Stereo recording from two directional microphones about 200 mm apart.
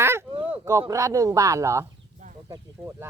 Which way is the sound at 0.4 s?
10° right (ahead or behind).